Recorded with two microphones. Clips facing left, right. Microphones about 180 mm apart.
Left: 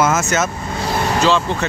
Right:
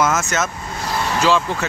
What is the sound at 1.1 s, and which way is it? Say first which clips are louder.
Speech: left 1 dB; 10° right (ahead or behind).